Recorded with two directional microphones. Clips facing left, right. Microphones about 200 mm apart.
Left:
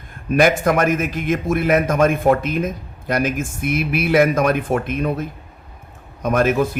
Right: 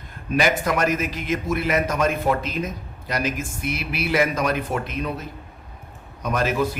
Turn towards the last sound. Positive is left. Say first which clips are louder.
# left 5 dB
turn(degrees=50)  # may be behind; listen again after turning